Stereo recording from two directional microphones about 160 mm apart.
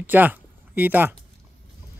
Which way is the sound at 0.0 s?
10° right (ahead or behind).